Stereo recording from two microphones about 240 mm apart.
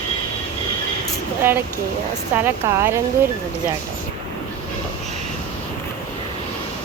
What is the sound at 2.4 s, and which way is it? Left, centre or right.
Speech, centre.